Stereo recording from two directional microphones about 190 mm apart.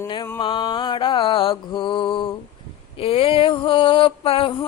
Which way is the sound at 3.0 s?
30° left (ahead or behind).